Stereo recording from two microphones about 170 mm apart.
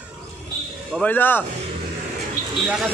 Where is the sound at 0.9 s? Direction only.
10° left (ahead or behind).